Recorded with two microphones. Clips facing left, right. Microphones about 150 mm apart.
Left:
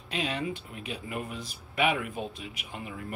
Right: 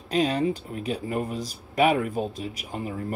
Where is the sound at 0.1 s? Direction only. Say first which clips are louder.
Right 9 dB; 40° right (ahead or behind).